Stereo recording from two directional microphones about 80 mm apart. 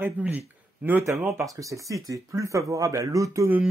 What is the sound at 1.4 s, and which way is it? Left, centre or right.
Speech, right.